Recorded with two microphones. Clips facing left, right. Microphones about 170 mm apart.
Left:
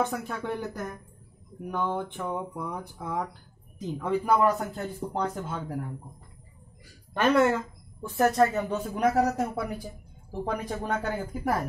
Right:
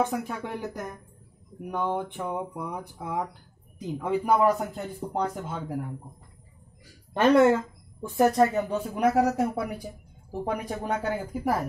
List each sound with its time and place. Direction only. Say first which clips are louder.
0.0 s speech: right 1 dB; 15° right (ahead or behind)
7.2 s speech: right 3 dB; 20° right (ahead or behind)